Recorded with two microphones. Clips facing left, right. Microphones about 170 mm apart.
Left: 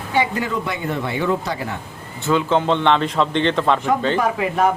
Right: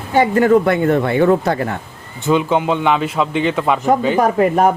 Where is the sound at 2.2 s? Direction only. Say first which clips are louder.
Right 2 dB; 15° right (ahead or behind).